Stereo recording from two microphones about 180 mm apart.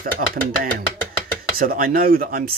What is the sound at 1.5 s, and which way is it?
Speech, 55° right (ahead or behind).